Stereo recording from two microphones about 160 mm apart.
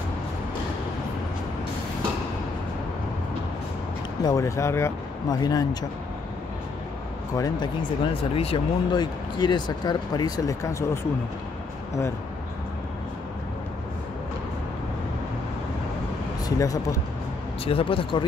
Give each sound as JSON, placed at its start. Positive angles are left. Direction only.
{"t": 4.2, "sound": "speech", "side_deg": 20}
{"t": 7.3, "sound": "speech", "side_deg": 25}
{"t": 16.4, "sound": "speech", "side_deg": 20}
{"t": 17.6, "sound": "speech", "side_deg": 35}